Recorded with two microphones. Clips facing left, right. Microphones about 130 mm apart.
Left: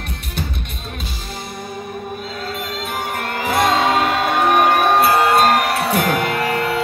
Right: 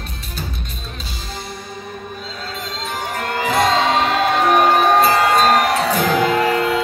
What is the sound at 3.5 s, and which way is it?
Music, 55° left (ahead or behind).